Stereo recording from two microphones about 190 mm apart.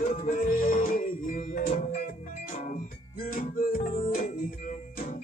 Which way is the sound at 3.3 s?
45° left (ahead or behind).